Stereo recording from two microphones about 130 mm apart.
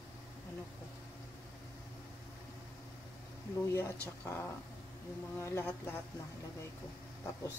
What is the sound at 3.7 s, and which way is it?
Speech, 20° left (ahead or behind).